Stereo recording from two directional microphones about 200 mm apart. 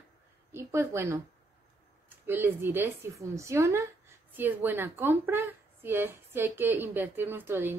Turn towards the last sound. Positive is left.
turn(degrees=-10)  # may be behind; listen again after turning